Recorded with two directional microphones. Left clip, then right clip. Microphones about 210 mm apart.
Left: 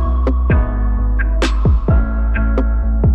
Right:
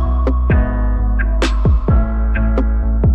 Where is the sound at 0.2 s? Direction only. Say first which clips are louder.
Right 1 dB; centre (ahead or behind).